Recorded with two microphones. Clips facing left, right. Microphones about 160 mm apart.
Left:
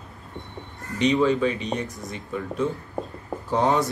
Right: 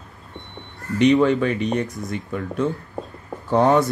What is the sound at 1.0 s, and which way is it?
Speech, 65° right (ahead or behind).